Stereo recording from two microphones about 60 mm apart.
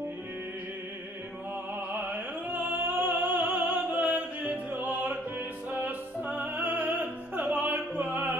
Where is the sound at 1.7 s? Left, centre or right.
Right.